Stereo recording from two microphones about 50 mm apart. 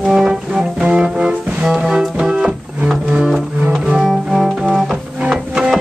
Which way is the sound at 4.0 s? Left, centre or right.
Centre.